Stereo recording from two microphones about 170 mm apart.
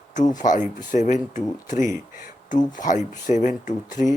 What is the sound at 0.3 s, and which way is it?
Speech, 50° left (ahead or behind).